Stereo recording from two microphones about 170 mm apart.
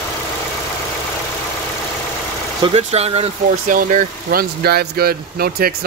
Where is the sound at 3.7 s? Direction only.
55° right (ahead or behind).